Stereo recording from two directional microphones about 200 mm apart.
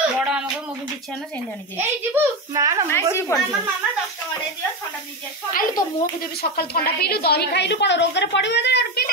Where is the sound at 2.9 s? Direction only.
10° left (ahead or behind).